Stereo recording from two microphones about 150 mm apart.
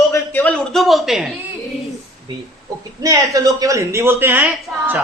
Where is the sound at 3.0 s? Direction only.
20° right (ahead or behind).